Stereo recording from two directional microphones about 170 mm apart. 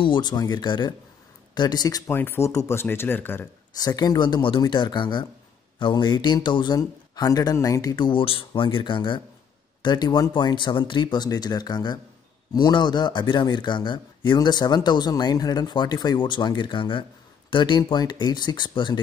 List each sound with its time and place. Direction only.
0.0 s speech: 25° left (ahead or behind)
3.7 s speech: 25° left (ahead or behind)